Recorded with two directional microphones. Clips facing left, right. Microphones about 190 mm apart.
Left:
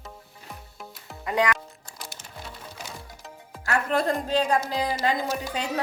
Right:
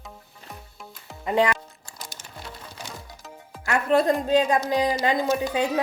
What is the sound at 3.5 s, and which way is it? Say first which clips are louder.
Music: even; centre (ahead or behind).